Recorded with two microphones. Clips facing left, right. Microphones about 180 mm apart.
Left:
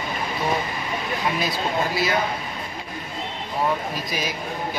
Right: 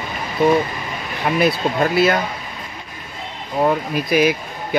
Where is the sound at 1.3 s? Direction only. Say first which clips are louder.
Right 7 dB; 60° right (ahead or behind).